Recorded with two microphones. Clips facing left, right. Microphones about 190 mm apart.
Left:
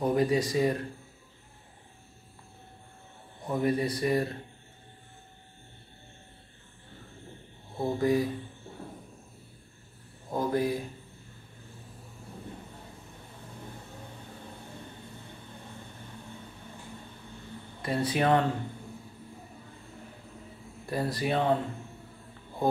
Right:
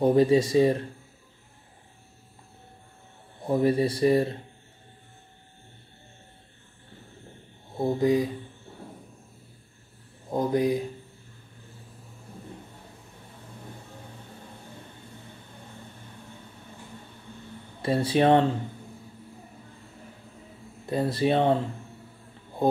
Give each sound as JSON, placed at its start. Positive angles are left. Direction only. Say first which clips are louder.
{"t": 0.0, "sound": "speech", "louder": "right 6 dB", "side_deg": -30}
{"t": 3.4, "sound": "speech", "louder": "right 5 dB", "side_deg": -30}
{"t": 7.7, "sound": "speech", "louder": "right 3 dB", "side_deg": -20}
{"t": 10.3, "sound": "speech", "louder": "right 4 dB", "side_deg": -20}
{"t": 17.8, "sound": "speech", "louder": "right 5 dB", "side_deg": -30}
{"t": 20.8, "sound": "speech", "louder": "right 6 dB", "side_deg": -20}